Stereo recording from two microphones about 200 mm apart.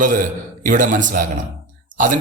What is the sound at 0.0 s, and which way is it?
Speech, 40° right (ahead or behind).